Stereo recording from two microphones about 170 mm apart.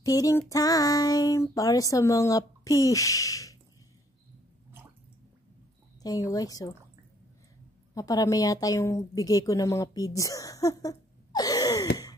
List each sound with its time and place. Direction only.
0.0 s child singing: 20° left (ahead or behind)
6.0 s child singing: 20° left (ahead or behind)
7.9 s a woman's voice: 20° left (ahead or behind)